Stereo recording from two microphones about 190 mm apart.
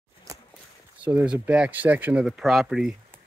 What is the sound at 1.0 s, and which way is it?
Speech, 5° right (ahead or behind).